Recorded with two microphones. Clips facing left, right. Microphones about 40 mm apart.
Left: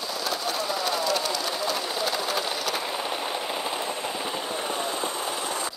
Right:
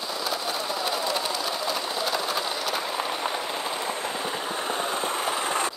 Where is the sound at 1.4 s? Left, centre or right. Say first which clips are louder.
Even; centre.